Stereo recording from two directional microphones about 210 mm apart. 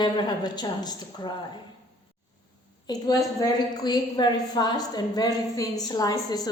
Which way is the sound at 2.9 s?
20° left (ahead or behind).